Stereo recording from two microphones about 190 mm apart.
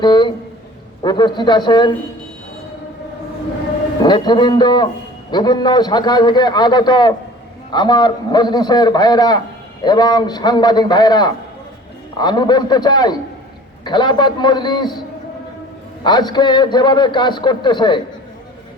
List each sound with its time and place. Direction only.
0.0 s a sound: 25° left (ahead or behind)
1.0 s a man's voice: 25° left (ahead or behind)
4.0 s a man's voice: 20° left (ahead or behind)
16.0 s a man's voice: 20° left (ahead or behind)